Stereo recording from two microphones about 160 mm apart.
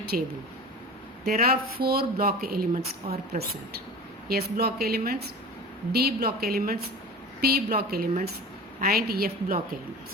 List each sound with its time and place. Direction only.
0.1 s speech: 60° right (ahead or behind)
4.3 s speech: 75° right (ahead or behind)